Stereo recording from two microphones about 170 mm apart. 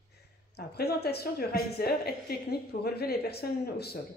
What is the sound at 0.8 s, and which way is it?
Speech, 70° left (ahead or behind).